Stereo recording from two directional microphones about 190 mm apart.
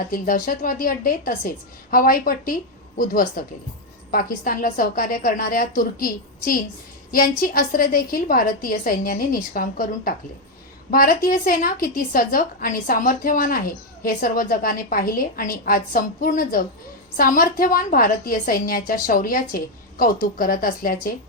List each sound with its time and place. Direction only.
0.1 s a woman's voice: 45° left (ahead or behind)